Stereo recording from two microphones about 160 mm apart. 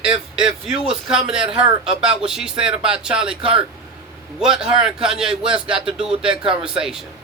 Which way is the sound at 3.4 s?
35° right (ahead or behind).